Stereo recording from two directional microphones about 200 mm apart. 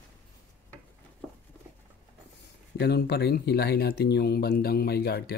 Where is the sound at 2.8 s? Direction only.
55° left (ahead or behind).